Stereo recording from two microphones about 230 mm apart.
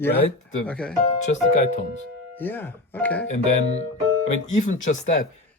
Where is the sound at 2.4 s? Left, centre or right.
Centre.